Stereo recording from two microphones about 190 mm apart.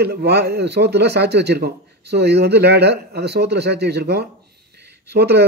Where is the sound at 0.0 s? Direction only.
60° right (ahead or behind).